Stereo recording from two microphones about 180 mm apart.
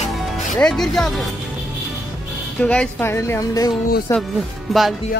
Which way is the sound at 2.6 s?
5° left (ahead or behind).